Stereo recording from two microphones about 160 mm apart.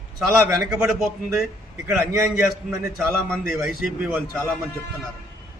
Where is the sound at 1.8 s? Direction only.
15° right (ahead or behind).